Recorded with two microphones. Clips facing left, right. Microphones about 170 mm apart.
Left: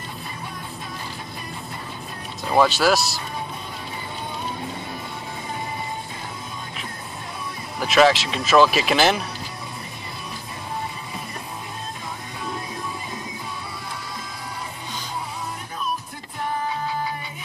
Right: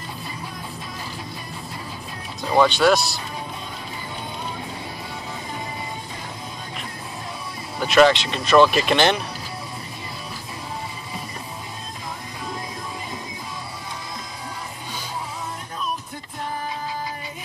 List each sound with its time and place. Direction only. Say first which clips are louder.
2.5 s speech: right 1 dB; centre (ahead or behind)
7.8 s speech: right 1 dB; centre (ahead or behind)